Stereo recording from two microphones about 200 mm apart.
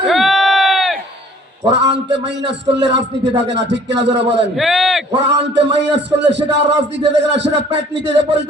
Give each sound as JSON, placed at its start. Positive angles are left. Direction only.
{"t": 0.1, "sound": "a sound", "side_deg": 0}
{"t": 1.6, "sound": "a man's voice", "side_deg": -60}
{"t": 4.5, "sound": "a man's voice", "side_deg": 0}
{"t": 5.4, "sound": "a man's voice", "side_deg": -60}